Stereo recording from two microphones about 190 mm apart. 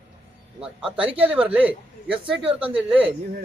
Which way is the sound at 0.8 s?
30° right (ahead or behind).